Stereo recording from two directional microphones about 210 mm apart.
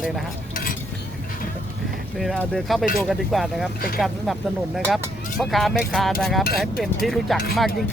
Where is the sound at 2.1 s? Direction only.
Centre (ahead or behind).